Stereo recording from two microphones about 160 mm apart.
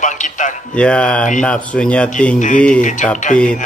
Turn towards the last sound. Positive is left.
turn(degrees=5)  # may be behind; listen again after turning